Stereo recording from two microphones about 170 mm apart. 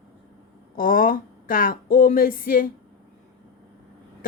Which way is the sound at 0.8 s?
55° left (ahead or behind).